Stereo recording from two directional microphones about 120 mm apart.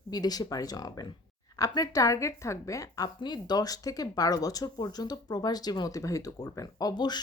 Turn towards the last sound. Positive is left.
turn(degrees=35)  # may be behind; listen again after turning